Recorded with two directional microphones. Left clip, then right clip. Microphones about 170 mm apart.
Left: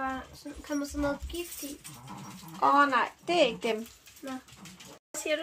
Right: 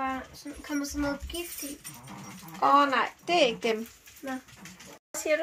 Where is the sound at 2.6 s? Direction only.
5° right (ahead or behind).